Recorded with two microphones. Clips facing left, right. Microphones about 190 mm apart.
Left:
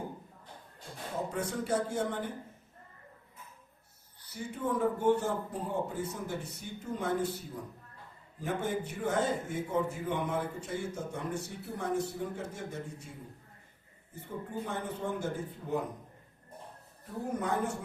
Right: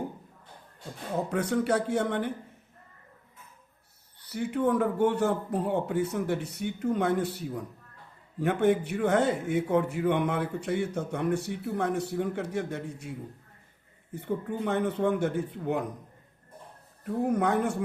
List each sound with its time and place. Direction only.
1.3 s a man's voice: 70° right (ahead or behind)
4.2 s a man's voice: 70° right (ahead or behind)
14.1 s a man's voice: 70° right (ahead or behind)
17.3 s a man's voice: 70° right (ahead or behind)